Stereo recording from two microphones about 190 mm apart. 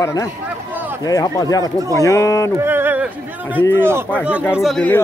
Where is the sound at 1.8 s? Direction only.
15° right (ahead or behind).